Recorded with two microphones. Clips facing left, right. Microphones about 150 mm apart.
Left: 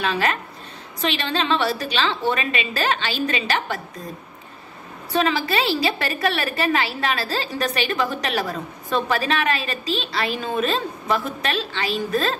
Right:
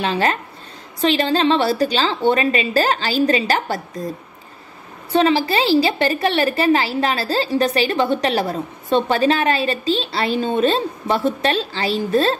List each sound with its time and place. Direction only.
0.0 s a woman's voice: 30° right (ahead or behind)
5.1 s a woman's voice: 30° right (ahead or behind)